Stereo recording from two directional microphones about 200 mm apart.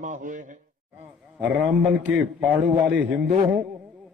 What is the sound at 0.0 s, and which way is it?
Speech, 40° right (ahead or behind).